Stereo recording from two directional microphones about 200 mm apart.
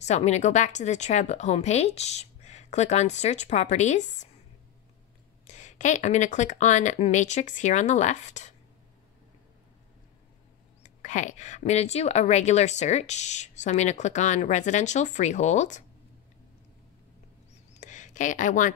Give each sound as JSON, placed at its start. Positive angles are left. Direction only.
{"t": 0.0, "sound": "speech", "side_deg": 35}
{"t": 5.5, "sound": "speech", "side_deg": 35}
{"t": 10.8, "sound": "speech", "side_deg": 35}
{"t": 17.7, "sound": "a sound", "side_deg": 40}